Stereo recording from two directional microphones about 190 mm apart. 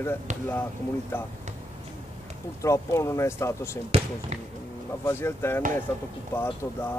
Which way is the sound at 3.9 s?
30° right (ahead or behind).